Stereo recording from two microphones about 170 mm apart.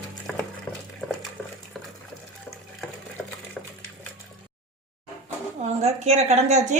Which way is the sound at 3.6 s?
5° left (ahead or behind).